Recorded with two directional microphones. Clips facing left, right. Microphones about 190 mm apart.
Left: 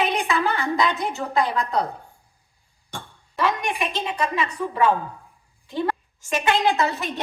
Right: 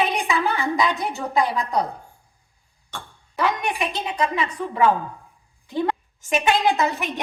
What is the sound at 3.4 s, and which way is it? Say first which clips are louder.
A woman's voice: even; 20° right (ahead or behind).